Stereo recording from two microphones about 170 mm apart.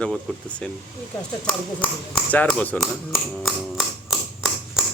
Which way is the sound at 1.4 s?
30° left (ahead or behind).